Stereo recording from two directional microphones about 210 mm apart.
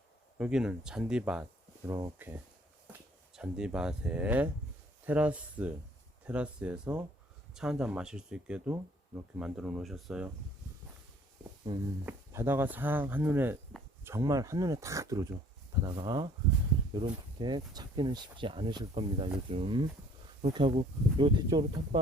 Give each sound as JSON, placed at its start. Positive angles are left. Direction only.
{"t": 0.3, "sound": "speech", "side_deg": -5}
{"t": 11.7, "sound": "speech", "side_deg": -20}